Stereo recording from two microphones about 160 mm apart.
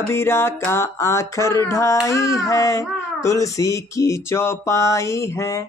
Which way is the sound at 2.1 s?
20° left (ahead or behind).